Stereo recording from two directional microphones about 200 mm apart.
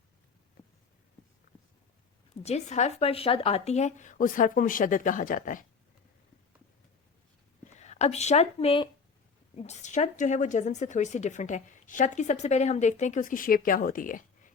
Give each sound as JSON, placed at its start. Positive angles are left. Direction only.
{"t": 2.4, "sound": "speech", "side_deg": 35}
{"t": 7.8, "sound": "speech", "side_deg": 35}